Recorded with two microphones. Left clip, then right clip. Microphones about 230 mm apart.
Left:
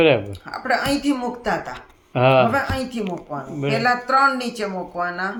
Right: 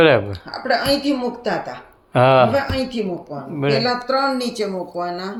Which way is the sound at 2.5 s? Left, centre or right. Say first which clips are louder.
Right 2 dB; left.